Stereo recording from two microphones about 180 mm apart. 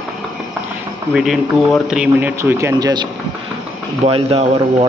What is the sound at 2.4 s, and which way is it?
Speech, 15° right (ahead or behind).